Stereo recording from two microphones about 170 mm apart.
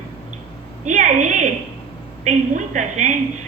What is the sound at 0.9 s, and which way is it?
A woman's voice, 45° right (ahead or behind).